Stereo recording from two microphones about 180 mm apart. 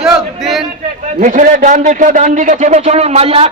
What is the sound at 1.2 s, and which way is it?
A man's voice, 45° right (ahead or behind).